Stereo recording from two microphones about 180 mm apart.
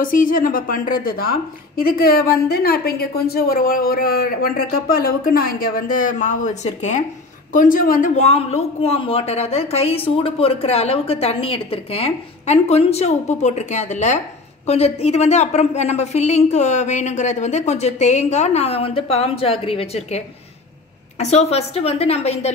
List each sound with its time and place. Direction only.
0.0 s a woman's voice: 50° left (ahead or behind)